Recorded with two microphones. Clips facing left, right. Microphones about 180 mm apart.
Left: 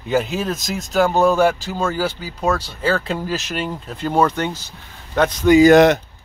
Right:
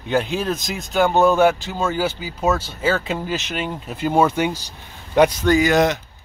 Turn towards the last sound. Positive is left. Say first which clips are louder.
# left 6 dB
turn(degrees=60)  # may be behind; listen again after turning